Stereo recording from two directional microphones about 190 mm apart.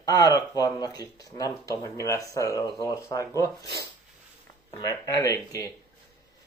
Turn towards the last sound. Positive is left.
turn(degrees=20)  # may be behind; listen again after turning